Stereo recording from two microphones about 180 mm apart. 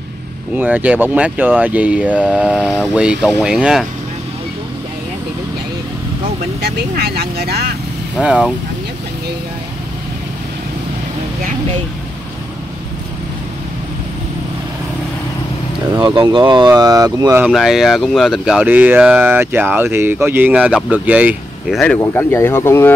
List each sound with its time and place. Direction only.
0.6 s speech: 10° right (ahead or behind)
6.6 s speech: 60° right (ahead or behind)
8.2 s speech: 5° right (ahead or behind)
16.0 s speech: 25° right (ahead or behind)
17.4 s speech: centre (ahead or behind)